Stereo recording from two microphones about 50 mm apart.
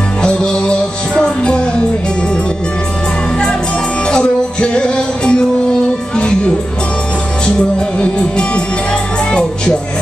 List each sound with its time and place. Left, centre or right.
0.2 s music: centre
4.1 s music: centre
8.0 s music: left